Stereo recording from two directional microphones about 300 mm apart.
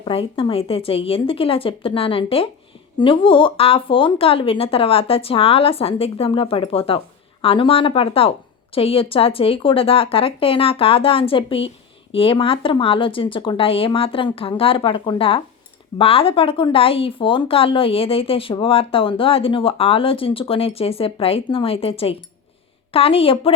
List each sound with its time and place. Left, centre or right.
0.0 s speech: centre